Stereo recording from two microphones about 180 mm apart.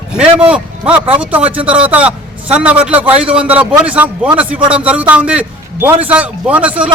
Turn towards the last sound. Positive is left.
turn(degrees=-10)  # may be behind; listen again after turning